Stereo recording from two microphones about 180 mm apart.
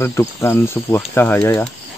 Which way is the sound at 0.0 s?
15° left (ahead or behind).